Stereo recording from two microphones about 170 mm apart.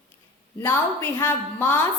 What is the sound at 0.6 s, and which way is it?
A woman's voice, 15° left (ahead or behind).